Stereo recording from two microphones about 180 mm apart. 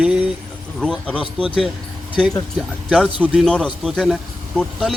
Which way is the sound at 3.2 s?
Centre (ahead or behind).